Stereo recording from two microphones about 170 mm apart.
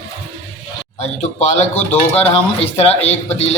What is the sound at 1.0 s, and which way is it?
Music, 40° left (ahead or behind).